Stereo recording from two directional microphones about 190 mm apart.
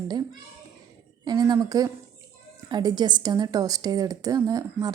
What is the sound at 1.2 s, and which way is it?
A woman's voice, 20° right (ahead or behind).